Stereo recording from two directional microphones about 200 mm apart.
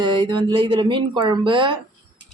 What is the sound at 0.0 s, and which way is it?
Speech, 25° right (ahead or behind).